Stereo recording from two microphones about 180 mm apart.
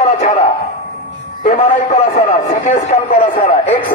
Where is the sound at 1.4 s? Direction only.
40° left (ahead or behind).